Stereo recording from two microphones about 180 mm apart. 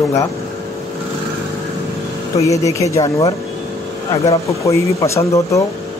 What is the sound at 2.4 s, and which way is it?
A man's voice, 15° left (ahead or behind).